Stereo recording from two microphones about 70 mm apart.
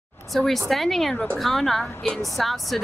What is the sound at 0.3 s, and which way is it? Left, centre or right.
Speech, centre.